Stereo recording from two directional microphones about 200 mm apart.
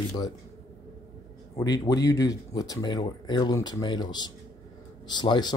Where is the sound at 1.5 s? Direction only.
20° left (ahead or behind).